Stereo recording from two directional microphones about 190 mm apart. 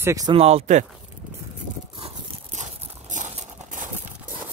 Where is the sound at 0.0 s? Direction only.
20° right (ahead or behind).